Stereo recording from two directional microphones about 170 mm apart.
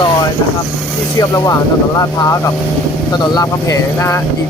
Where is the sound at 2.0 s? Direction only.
20° left (ahead or behind).